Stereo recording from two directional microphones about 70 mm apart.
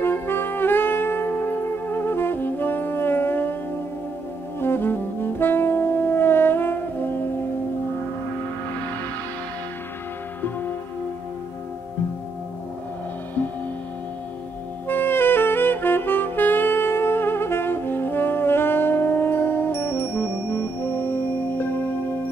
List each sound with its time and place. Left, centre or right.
0.0 s brass instrument: left
4.6 s brass instrument: left
14.9 s saxophone: left